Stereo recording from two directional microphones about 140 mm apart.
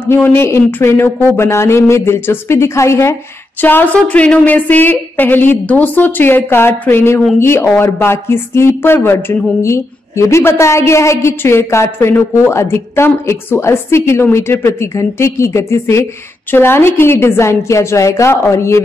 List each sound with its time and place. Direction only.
0.0 s a woman's voice: 15° left (ahead or behind)